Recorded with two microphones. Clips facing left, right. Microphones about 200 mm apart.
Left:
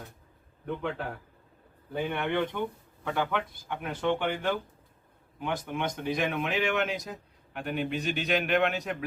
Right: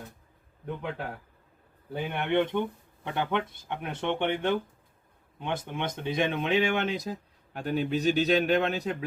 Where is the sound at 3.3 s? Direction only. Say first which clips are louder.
Right 2 dB; 25° right (ahead or behind).